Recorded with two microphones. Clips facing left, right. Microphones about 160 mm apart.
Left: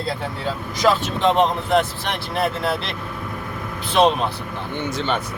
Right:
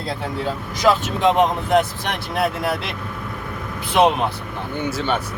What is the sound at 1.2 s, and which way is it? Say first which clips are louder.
Speech: right 1 dB; 10° right (ahead or behind).